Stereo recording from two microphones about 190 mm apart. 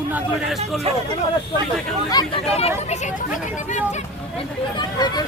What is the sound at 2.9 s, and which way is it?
Speech, 40° left (ahead or behind).